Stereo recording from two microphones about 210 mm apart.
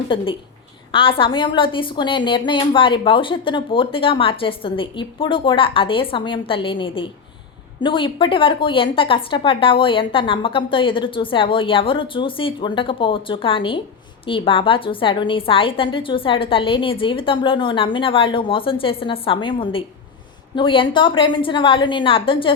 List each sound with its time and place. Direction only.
0.9 s a woman's voice: 25° left (ahead or behind)